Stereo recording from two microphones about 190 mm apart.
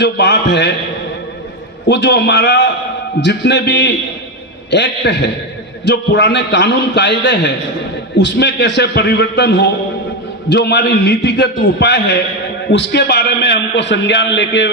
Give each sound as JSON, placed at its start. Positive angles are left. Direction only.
{"t": 0.0, "sound": "a man's voice", "side_deg": 65}
{"t": 1.9, "sound": "a man's voice", "side_deg": 60}